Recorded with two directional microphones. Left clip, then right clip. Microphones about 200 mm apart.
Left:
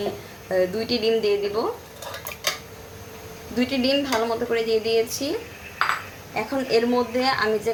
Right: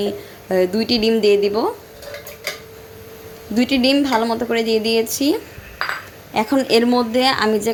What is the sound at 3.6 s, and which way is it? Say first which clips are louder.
A woman's voice: right 6 dB; 35° right (ahead or behind).